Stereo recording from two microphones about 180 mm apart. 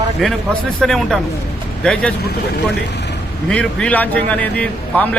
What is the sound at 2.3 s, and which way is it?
Speech, 70° left (ahead or behind).